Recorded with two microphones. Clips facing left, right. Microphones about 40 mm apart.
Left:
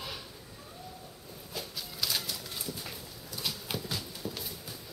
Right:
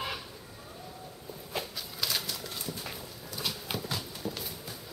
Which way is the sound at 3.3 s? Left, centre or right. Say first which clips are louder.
Right 1 dB; centre.